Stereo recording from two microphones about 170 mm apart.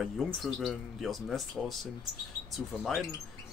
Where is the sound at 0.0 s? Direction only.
Centre (ahead or behind).